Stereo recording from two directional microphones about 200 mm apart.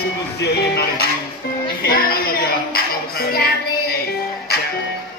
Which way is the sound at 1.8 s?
50° left (ahead or behind).